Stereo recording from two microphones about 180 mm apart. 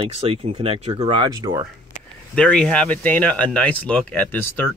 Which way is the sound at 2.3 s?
5° left (ahead or behind).